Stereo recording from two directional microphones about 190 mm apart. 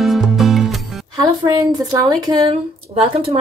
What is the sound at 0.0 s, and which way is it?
Music, centre (ahead or behind).